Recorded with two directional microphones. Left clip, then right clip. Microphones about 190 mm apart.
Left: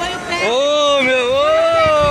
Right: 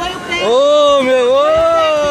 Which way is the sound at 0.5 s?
25° right (ahead or behind).